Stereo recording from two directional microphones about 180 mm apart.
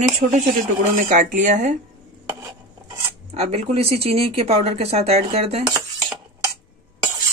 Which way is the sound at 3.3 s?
35° right (ahead or behind).